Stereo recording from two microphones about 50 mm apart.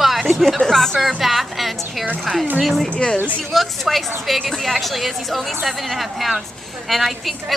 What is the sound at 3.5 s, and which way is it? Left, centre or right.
A woman's voice, centre.